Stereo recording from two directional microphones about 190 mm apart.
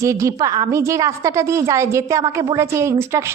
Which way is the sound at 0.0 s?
15° right (ahead or behind).